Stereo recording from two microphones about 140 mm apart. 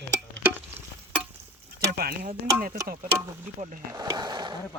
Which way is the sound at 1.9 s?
90° right.